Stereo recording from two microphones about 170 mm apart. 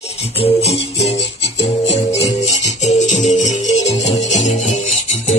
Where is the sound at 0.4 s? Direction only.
40° left (ahead or behind).